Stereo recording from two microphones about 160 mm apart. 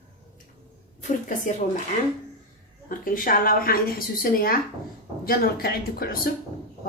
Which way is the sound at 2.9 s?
60° left (ahead or behind).